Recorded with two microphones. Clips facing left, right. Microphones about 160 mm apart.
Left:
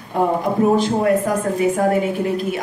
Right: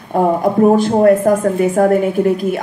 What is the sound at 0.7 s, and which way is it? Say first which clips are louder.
A woman's voice: right 6 dB; 45° right (ahead or behind).